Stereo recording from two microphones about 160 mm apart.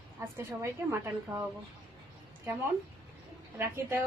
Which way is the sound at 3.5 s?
15° right (ahead or behind).